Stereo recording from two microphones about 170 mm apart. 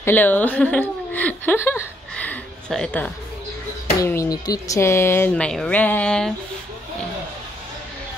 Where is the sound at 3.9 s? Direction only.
20° left (ahead or behind).